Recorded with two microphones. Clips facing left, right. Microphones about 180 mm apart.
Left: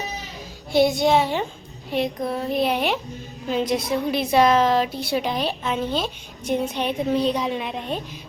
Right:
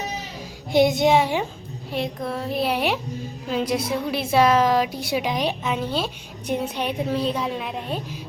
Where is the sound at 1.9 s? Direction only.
Centre (ahead or behind).